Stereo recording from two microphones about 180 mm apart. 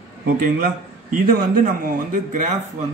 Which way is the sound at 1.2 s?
55° right (ahead or behind).